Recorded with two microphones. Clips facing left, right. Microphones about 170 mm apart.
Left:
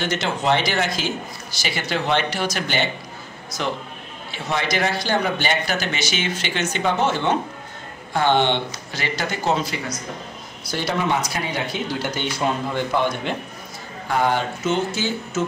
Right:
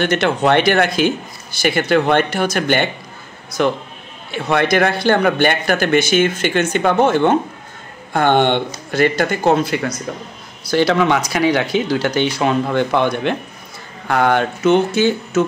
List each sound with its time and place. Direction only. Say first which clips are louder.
0.0 s speech: right 7 dB; 60° right (ahead or behind)
10.6 s speech: right 9 dB; 75° right (ahead or behind)